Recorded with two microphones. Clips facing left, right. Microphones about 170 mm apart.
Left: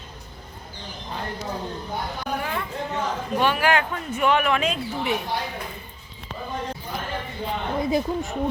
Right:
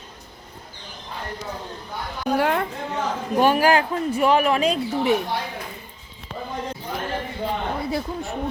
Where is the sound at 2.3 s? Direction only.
70° right (ahead or behind).